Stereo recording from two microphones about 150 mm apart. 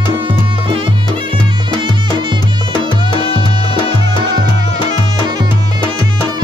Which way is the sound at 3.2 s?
35° left (ahead or behind).